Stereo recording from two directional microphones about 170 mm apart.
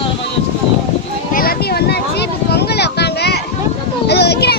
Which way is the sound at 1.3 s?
60° left (ahead or behind).